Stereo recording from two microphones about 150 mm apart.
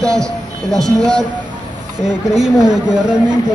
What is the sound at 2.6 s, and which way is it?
Speech, 25° right (ahead or behind).